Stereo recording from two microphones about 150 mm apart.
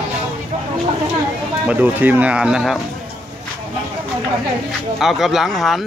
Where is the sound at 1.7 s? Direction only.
10° right (ahead or behind).